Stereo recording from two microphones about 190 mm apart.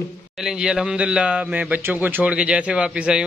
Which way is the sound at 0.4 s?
5° right (ahead or behind).